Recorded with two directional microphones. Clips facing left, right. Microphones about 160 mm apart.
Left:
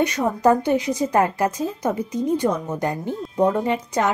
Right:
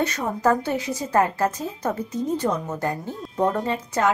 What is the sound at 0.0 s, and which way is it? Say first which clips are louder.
A woman's voice: left 4 dB; 15° left (ahead or behind).